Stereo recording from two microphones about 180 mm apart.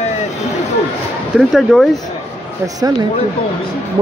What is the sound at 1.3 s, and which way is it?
Speech, centre (ahead or behind).